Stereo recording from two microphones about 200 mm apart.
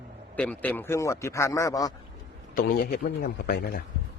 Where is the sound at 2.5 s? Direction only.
45° left (ahead or behind).